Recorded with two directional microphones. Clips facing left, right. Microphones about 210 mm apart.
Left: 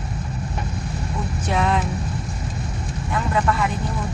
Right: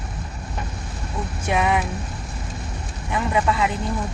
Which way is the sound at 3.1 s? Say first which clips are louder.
Right 1 dB; 15° right (ahead or behind).